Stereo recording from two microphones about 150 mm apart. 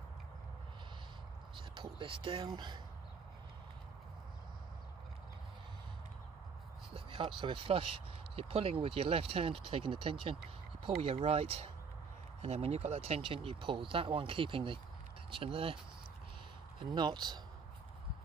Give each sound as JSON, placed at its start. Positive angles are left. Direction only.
{"t": 1.8, "sound": "speech", "side_deg": -35}
{"t": 6.9, "sound": "speech", "side_deg": -35}
{"t": 16.9, "sound": "speech", "side_deg": -30}